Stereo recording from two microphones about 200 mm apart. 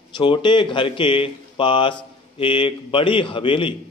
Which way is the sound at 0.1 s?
25° left (ahead or behind).